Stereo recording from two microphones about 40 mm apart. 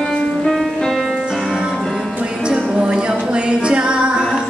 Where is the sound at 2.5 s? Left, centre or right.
Right.